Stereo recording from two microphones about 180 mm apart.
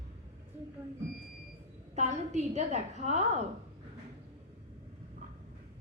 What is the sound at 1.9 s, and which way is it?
A woman's voice, 40° right (ahead or behind).